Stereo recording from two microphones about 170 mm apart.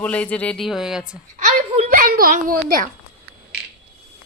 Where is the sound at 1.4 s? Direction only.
40° right (ahead or behind).